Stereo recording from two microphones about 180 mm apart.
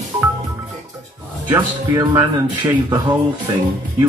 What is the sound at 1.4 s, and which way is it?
Speech, 20° right (ahead or behind).